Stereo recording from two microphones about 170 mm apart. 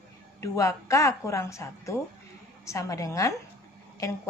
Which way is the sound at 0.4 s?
20° left (ahead or behind).